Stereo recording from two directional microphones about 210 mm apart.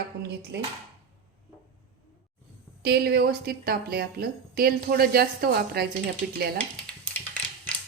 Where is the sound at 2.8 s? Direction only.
50° right (ahead or behind).